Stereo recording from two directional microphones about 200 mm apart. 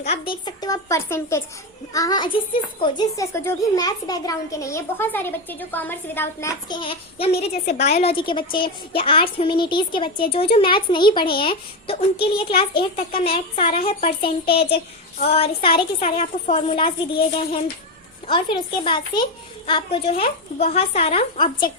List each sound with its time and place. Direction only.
0.0 s a child's voice: 30° left (ahead or behind)